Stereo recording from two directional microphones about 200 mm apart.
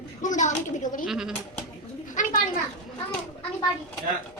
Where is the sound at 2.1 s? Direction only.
40° left (ahead or behind).